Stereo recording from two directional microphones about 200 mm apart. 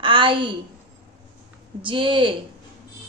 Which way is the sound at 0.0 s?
25° right (ahead or behind).